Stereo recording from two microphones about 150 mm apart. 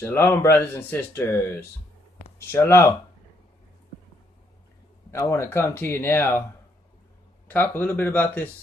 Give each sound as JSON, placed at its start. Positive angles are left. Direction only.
{"t": 0.0, "sound": "speech", "side_deg": 15}
{"t": 5.1, "sound": "speech", "side_deg": 20}
{"t": 7.4, "sound": "speech", "side_deg": 15}